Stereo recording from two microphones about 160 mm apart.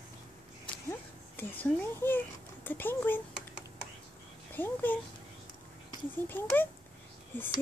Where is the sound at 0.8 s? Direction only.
10° left (ahead or behind).